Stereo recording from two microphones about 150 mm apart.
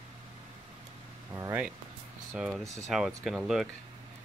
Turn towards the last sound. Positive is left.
turn(degrees=0)  # may be behind; listen again after turning